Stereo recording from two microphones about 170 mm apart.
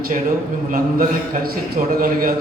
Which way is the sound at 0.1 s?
55° right (ahead or behind).